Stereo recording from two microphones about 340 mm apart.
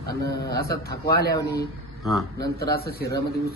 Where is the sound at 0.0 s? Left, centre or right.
Left.